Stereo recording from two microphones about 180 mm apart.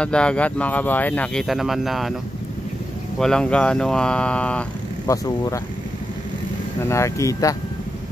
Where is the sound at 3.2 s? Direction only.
5° left (ahead or behind).